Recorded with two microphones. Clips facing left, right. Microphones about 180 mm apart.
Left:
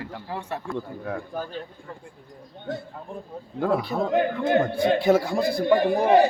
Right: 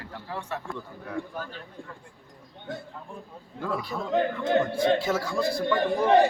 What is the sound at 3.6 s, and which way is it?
Speech, 60° left (ahead or behind).